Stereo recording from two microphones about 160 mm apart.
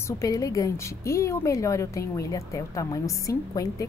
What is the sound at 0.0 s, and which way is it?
A woman's voice, 20° left (ahead or behind).